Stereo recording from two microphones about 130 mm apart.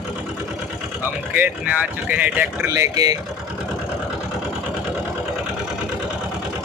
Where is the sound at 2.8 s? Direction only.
30° right (ahead or behind).